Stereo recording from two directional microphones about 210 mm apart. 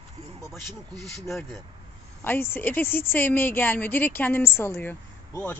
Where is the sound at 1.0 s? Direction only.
Centre (ahead or behind).